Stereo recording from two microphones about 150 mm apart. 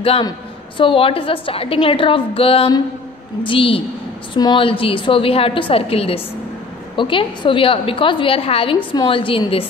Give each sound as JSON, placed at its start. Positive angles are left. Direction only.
{"t": 0.0, "sound": "a woman's voice", "side_deg": 40}